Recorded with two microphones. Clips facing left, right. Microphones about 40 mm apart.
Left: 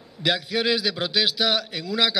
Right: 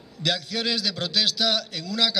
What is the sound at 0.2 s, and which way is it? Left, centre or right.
A man's voice, centre.